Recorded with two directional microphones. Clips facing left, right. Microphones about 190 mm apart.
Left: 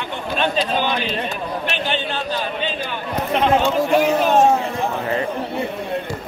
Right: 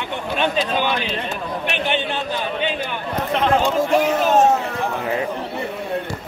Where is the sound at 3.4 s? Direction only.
5° left (ahead or behind).